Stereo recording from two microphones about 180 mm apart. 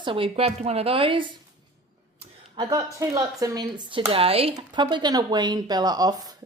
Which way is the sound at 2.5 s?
20° right (ahead or behind).